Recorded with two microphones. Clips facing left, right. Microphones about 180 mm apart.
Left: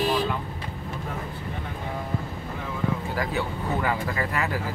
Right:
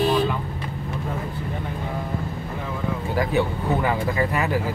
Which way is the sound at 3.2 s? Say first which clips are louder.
Right 6 dB; 25° right (ahead or behind).